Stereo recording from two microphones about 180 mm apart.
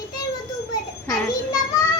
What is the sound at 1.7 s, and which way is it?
Music, 20° left (ahead or behind).